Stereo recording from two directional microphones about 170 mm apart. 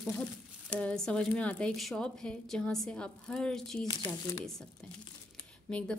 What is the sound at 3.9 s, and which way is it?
Speech, 20° left (ahead or behind).